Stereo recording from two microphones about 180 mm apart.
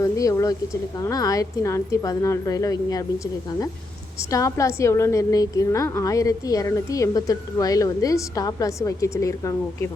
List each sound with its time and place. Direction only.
0.0 s a woman's voice: 20° left (ahead or behind)
4.3 s a woman's voice: 15° left (ahead or behind)